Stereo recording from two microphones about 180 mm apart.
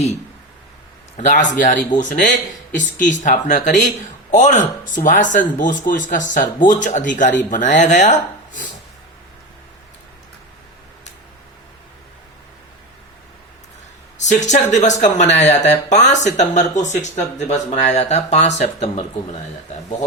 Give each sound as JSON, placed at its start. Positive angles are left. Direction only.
{"t": 1.1, "sound": "a man's voice", "side_deg": 45}
{"t": 14.5, "sound": "speech", "side_deg": 40}